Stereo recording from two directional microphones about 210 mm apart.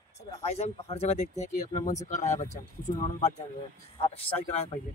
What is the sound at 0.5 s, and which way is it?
Speech, 30° left (ahead or behind).